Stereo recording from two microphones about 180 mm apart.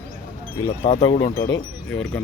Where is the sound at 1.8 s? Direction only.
5° left (ahead or behind).